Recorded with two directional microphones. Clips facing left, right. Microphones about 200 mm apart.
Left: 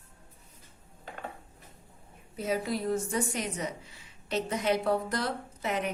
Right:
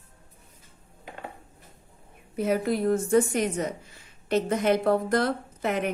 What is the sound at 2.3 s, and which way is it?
A woman's voice, 60° right (ahead or behind).